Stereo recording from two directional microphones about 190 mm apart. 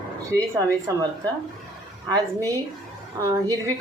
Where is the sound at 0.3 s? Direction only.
20° right (ahead or behind).